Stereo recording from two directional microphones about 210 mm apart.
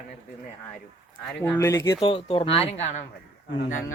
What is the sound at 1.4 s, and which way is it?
Speech, 10° left (ahead or behind).